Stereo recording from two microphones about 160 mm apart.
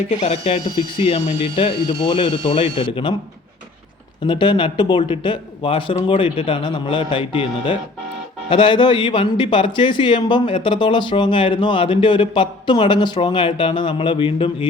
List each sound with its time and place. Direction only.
0.2 s speech: 40° left (ahead or behind)
4.3 s speech: 30° left (ahead or behind)